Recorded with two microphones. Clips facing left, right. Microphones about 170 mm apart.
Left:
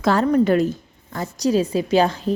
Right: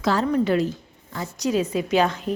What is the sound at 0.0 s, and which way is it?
A woman's voice, 55° left (ahead or behind).